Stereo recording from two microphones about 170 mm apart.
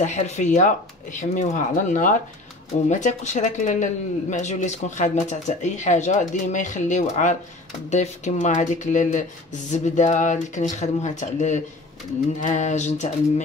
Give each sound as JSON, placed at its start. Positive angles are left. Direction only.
{"t": 0.0, "sound": "speech", "side_deg": 45}